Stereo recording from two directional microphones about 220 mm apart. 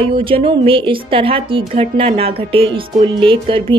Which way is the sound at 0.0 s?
25° right (ahead or behind).